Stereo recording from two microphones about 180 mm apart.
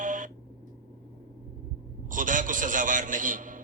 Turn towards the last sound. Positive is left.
turn(degrees=-45)  # may be behind; listen again after turning